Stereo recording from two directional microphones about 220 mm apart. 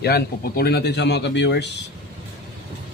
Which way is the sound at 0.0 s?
45° left (ahead or behind).